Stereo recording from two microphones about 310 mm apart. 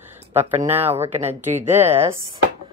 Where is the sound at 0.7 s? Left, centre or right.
Centre.